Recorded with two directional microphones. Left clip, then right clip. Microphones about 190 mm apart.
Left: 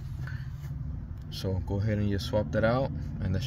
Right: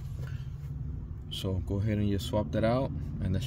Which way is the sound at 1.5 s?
20° right (ahead or behind).